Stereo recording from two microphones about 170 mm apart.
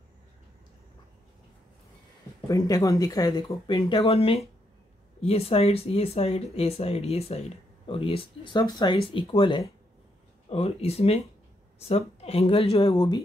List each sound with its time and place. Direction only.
2.4 s speech: 20° left (ahead or behind)